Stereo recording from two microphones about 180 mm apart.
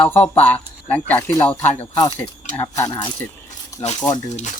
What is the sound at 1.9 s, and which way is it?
Speech, 25° left (ahead or behind).